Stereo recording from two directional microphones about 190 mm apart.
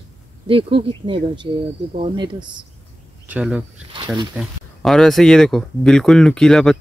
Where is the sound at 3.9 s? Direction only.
25° right (ahead or behind).